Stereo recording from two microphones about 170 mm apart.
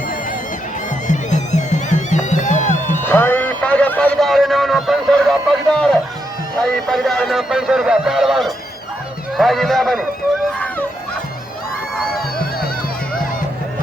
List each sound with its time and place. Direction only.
1.0 s music: 45° left (ahead or behind)
3.0 s music: 10° left (ahead or behind)
6.6 s speech: centre (ahead or behind)